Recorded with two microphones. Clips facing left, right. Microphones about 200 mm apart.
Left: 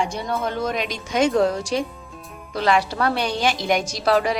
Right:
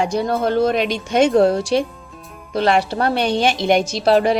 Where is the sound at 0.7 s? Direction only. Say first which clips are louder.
Right 6 dB; 65° right (ahead or behind).